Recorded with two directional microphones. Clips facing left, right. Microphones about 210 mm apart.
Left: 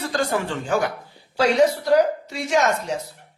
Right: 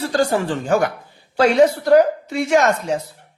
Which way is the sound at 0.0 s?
30° right (ahead or behind).